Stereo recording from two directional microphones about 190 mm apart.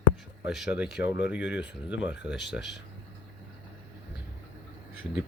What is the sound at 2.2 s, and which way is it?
Speech, 65° left (ahead or behind).